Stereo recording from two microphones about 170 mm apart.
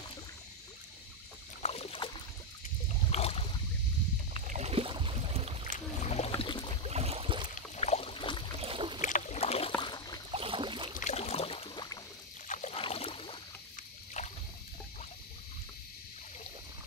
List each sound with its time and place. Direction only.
1.6 s boat: 35° left (ahead or behind)
3.1 s a sound: 35° left (ahead or behind)
4.5 s boat: 40° right (ahead or behind)
5.7 s boat: 40° left (ahead or behind)
6.9 s boat: 35° right (ahead or behind)
7.7 s boat: 40° left (ahead or behind)
8.5 s boat: 30° right (ahead or behind)
9.0 s rowboat: 45° left (ahead or behind)
9.8 s a sound: 25° left (ahead or behind)
10.3 s boat: 30° right (ahead or behind)
11.0 s boat: 40° left (ahead or behind)
12.4 s boat: 40° left (ahead or behind)
14.2 s rowboat: 40° left (ahead or behind)